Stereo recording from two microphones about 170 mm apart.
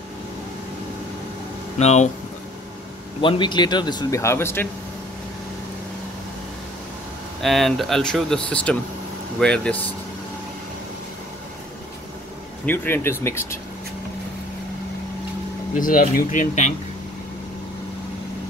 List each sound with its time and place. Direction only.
1.8 s speech: 40° left (ahead or behind)
3.2 s a man's voice: 30° left (ahead or behind)
7.4 s speech: centre (ahead or behind)
12.6 s speech: 15° left (ahead or behind)
15.7 s speech: 55° left (ahead or behind)